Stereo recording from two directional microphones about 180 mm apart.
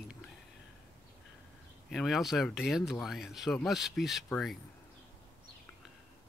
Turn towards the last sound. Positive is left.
turn(degrees=0)  # may be behind; listen again after turning